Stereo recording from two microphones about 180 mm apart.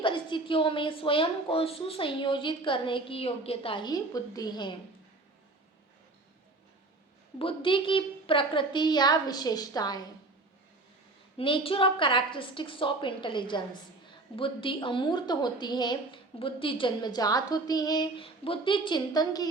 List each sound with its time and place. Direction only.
0.0 s a woman's voice: 25° left (ahead or behind)
7.3 s a woman's voice: 30° left (ahead or behind)
11.3 s a woman's voice: 30° left (ahead or behind)